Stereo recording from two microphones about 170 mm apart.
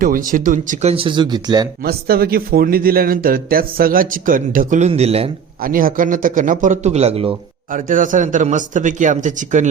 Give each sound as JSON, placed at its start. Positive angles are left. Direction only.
{"t": 0.0, "sound": "speech", "side_deg": -55}
{"t": 1.8, "sound": "speech", "side_deg": -65}
{"t": 4.9, "sound": "speech", "side_deg": -35}
{"t": 5.5, "sound": "a man's voice", "side_deg": -55}
{"t": 7.7, "sound": "a man's voice", "side_deg": -50}